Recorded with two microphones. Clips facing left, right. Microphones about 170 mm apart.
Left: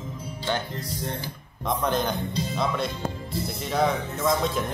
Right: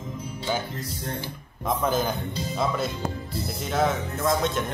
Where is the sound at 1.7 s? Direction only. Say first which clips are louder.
Right 1 dB; 5° right (ahead or behind).